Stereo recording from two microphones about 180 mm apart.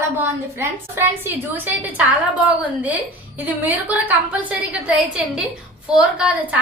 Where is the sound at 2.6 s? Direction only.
10° right (ahead or behind).